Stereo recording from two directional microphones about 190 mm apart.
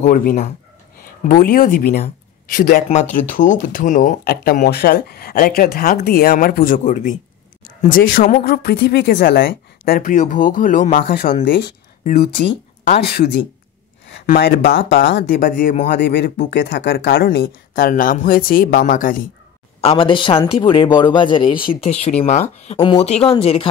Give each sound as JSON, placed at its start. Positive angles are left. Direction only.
{"t": 0.0, "sound": "speech", "side_deg": 45}
{"t": 4.2, "sound": "speech", "side_deg": 55}
{"t": 12.4, "sound": "speech", "side_deg": 35}
{"t": 14.4, "sound": "speech", "side_deg": 70}
{"t": 15.2, "sound": "speech", "side_deg": 45}
{"t": 15.9, "sound": "speech", "side_deg": 60}
{"t": 19.8, "sound": "a man's voice", "side_deg": 30}